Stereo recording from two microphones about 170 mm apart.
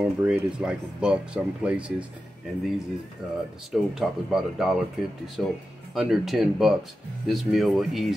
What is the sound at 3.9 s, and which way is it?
Speech, centre (ahead or behind).